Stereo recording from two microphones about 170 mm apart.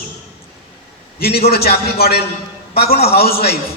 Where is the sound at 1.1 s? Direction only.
65° left (ahead or behind).